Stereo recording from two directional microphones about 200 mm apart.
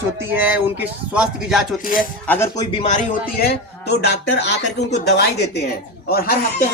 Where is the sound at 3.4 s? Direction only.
60° left (ahead or behind).